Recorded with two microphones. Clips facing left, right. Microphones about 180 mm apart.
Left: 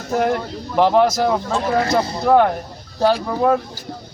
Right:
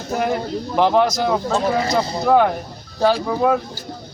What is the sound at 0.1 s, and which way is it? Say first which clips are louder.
A man's voice: left 2 dB; centre (ahead or behind).